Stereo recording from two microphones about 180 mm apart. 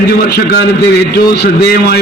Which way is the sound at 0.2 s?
60° left (ahead or behind).